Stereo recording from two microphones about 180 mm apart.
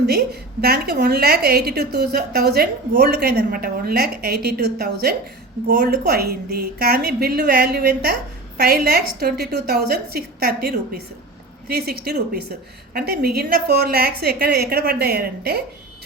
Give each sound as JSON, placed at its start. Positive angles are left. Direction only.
{"t": 0.0, "sound": "a woman's voice", "side_deg": -60}